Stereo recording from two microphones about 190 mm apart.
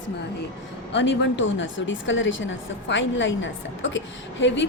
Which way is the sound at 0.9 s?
75° left (ahead or behind).